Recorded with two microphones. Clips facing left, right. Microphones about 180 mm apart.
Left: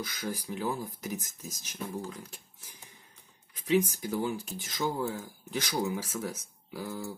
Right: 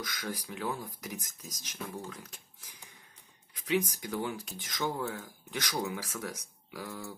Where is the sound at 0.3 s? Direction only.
25° left (ahead or behind).